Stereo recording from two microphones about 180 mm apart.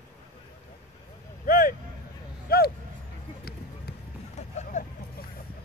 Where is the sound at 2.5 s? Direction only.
60° left (ahead or behind).